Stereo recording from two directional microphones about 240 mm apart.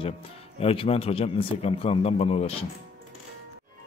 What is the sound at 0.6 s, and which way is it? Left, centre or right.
A man's voice, left.